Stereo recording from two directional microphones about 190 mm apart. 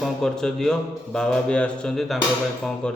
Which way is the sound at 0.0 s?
Centre (ahead or behind).